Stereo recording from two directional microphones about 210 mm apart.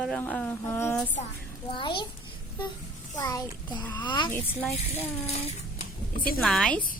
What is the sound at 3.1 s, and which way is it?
A woman's voice, 15° left (ahead or behind).